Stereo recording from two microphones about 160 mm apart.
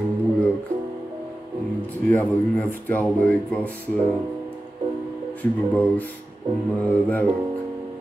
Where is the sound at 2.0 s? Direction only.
10° left (ahead or behind).